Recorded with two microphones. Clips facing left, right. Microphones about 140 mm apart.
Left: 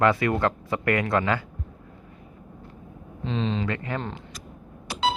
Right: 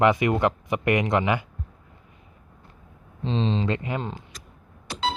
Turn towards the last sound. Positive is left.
turn(degrees=10)  # may be behind; listen again after turning